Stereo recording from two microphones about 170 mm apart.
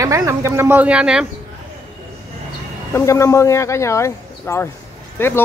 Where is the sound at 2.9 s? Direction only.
15° left (ahead or behind).